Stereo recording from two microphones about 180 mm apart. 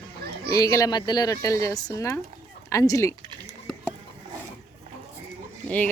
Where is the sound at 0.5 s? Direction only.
20° left (ahead or behind).